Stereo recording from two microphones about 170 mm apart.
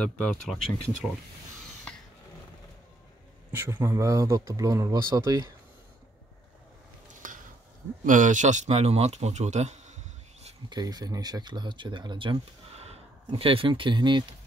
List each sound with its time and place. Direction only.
0.0 s speech: 5° left (ahead or behind)
3.5 s speech: 15° right (ahead or behind)
7.2 s a sound: 50° right (ahead or behind)
8.0 s speech: 50° right (ahead or behind)
10.7 s speech: 25° right (ahead or behind)